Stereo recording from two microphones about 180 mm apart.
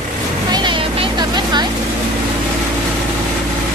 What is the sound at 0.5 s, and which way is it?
Vehicle, 25° right (ahead or behind).